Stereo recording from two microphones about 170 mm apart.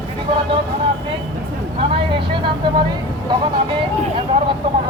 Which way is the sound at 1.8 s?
30° right (ahead or behind).